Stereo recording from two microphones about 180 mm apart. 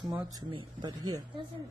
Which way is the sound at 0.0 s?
20° right (ahead or behind).